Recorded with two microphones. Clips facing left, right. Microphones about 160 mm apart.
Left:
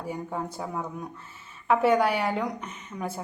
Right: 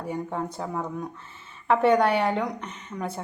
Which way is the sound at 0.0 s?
5° left (ahead or behind).